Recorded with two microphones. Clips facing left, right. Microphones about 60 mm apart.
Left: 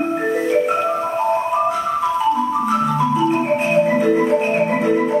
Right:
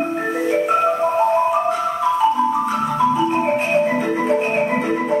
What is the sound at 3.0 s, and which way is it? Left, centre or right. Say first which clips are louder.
Marimba: even; centre.